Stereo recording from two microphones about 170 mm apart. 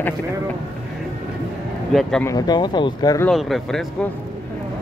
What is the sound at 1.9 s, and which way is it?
Speech, centre (ahead or behind).